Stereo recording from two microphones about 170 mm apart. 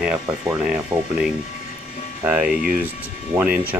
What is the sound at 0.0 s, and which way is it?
Speech, 5° right (ahead or behind).